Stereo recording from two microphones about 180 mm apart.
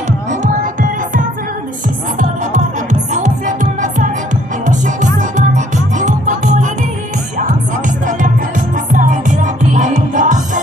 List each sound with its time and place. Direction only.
2.1 s music: 45° right (ahead or behind)
8.2 s music: 45° right (ahead or behind)